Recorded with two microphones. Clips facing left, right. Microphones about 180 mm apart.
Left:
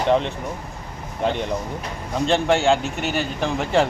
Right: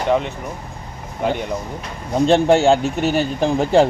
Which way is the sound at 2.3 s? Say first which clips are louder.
Right 5 dB; 35° right (ahead or behind).